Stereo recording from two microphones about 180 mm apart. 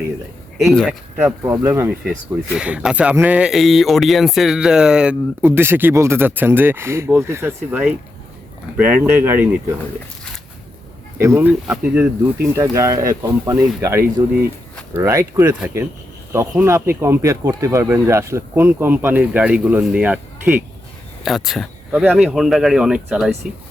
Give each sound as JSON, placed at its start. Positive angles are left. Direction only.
{"t": 0.6, "sound": "speech", "side_deg": 0}
{"t": 11.2, "sound": "speech", "side_deg": -15}